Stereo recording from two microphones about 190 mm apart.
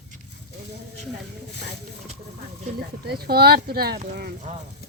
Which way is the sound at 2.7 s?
55° right (ahead or behind).